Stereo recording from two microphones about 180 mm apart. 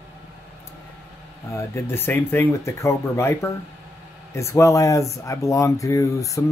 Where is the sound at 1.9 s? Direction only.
10° left (ahead or behind).